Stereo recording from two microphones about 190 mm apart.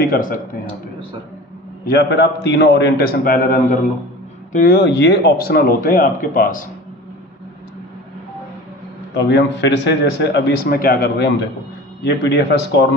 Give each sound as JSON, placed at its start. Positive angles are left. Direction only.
{"t": 0.0, "sound": "speech", "side_deg": 50}
{"t": 1.9, "sound": "a man's voice", "side_deg": 60}
{"t": 4.5, "sound": "speech", "side_deg": 50}
{"t": 9.1, "sound": "a man's voice", "side_deg": 65}